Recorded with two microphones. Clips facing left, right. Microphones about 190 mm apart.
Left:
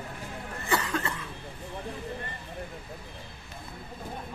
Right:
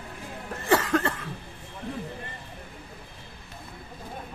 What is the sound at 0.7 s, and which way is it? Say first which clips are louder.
Cough: right 6 dB; 50° right (ahead or behind).